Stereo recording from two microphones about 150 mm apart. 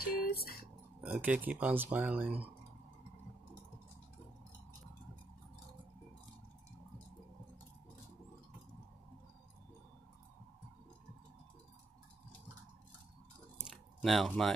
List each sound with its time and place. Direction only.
0.0 s music: 90° left
1.0 s speech: 10° right (ahead or behind)
13.7 s a sound: centre (ahead or behind)